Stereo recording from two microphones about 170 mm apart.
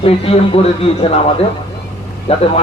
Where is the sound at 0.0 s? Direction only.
35° left (ahead or behind).